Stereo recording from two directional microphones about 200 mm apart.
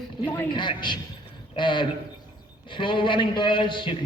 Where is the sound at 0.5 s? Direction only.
25° left (ahead or behind).